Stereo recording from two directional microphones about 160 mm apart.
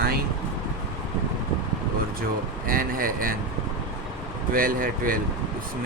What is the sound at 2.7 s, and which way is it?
Speech, 60° right (ahead or behind).